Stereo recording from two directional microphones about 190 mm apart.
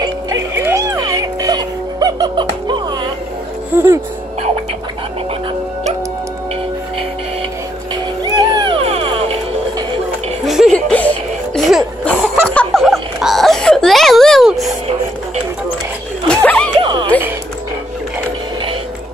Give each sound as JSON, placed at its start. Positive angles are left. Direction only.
{"t": 0.0, "sound": "music", "side_deg": -15}
{"t": 8.2, "sound": "music", "side_deg": -25}
{"t": 10.4, "sound": "music", "side_deg": 0}
{"t": 12.5, "sound": "a sound", "side_deg": 0}
{"t": 16.3, "sound": "a sound", "side_deg": 5}
{"t": 16.8, "sound": "music", "side_deg": -25}